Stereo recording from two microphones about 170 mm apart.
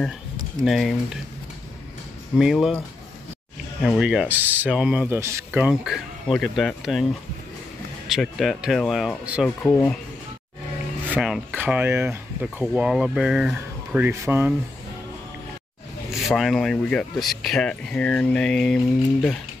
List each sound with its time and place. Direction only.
0.7 s speech: centre (ahead or behind)
2.3 s speech: centre (ahead or behind)
3.8 s speech: 5° right (ahead or behind)
8.1 s speech: centre (ahead or behind)
9.6 s speech: 10° left (ahead or behind)
11.1 s speech: 5° right (ahead or behind)
16.1 s speech: centre (ahead or behind)